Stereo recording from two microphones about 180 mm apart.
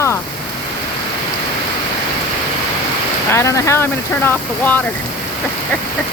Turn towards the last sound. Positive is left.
turn(degrees=10)  # may be behind; listen again after turning